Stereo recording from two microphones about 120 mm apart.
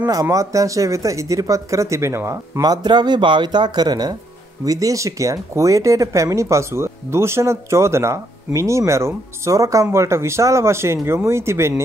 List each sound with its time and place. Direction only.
0.0 s speech: 30° right (ahead or behind)